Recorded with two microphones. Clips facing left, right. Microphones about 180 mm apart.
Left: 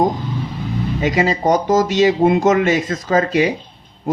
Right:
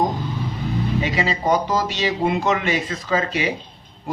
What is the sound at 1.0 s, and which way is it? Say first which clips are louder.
Speech: left 9 dB; 45° left (ahead or behind).